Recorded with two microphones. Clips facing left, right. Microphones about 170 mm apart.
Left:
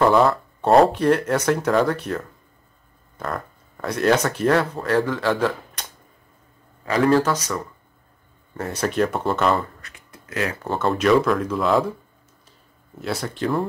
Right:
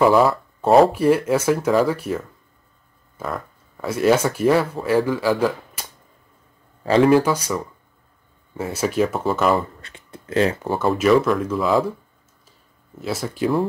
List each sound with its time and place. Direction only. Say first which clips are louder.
0.0 s speech: right 1 dB; 5° right (ahead or behind)
6.8 s speech: right 5 dB; 30° right (ahead or behind)
7.1 s speech: right 2 dB; 10° right (ahead or behind)
9.8 s a sound: right 5 dB; 30° right (ahead or behind)
10.7 s speech: even; 5° right (ahead or behind)
13.0 s speech: right 2 dB; centre (ahead or behind)